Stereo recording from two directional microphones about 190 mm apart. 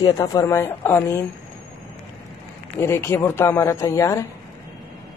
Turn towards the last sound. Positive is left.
turn(degrees=15)  # may be behind; listen again after turning